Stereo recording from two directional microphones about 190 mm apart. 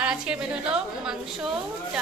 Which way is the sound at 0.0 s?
5° right (ahead or behind).